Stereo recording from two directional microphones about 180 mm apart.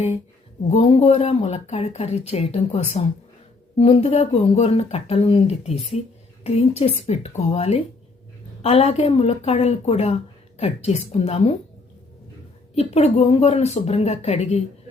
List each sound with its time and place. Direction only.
0.7 s speech: 35° left (ahead or behind)
12.7 s speech: 35° left (ahead or behind)